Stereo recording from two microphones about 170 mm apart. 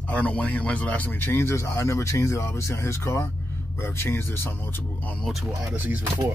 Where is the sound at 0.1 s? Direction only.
10° left (ahead or behind).